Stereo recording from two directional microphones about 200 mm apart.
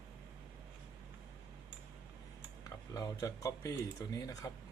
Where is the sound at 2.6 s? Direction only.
15° left (ahead or behind).